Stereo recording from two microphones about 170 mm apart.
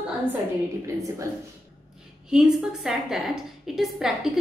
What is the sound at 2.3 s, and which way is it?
A woman's voice, 5° right (ahead or behind).